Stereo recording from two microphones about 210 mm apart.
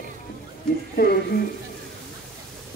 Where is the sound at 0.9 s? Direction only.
45° left (ahead or behind).